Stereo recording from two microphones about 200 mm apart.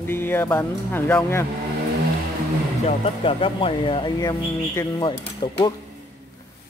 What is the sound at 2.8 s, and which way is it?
Speech, 30° left (ahead or behind).